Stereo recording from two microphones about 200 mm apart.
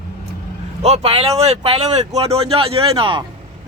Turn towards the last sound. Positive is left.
turn(degrees=-25)  # may be behind; listen again after turning